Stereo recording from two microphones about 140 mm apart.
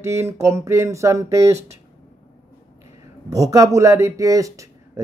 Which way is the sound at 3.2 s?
25° right (ahead or behind).